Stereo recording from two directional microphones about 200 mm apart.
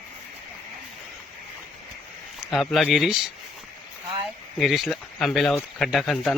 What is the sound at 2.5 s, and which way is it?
Speech, centre (ahead or behind).